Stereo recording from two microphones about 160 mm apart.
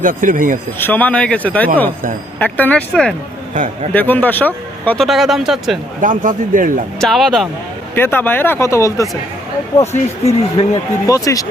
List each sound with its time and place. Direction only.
0.0 s a man's voice: 55° right (ahead or behind)
0.8 s speech: 10° left (ahead or behind)
5.0 s speech: centre (ahead or behind)
6.0 s a man's voice: 55° right (ahead or behind)
7.0 s speech: centre (ahead or behind)
7.9 s speech: 15° left (ahead or behind)
9.9 s speech: 40° left (ahead or behind)
11.0 s speech: 20° left (ahead or behind)